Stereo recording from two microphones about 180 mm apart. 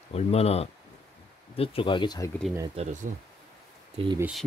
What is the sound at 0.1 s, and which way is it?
Speech, 35° left (ahead or behind).